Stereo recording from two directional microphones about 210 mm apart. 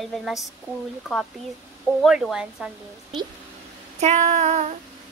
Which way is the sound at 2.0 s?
Centre (ahead or behind).